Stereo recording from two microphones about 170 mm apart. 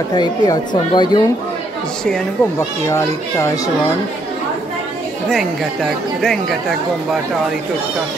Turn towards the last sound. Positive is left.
turn(degrees=0)  # may be behind; listen again after turning